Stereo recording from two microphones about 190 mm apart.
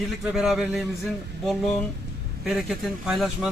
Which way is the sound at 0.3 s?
Centre (ahead or behind).